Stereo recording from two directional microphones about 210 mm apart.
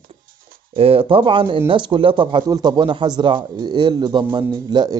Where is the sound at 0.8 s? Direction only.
25° right (ahead or behind).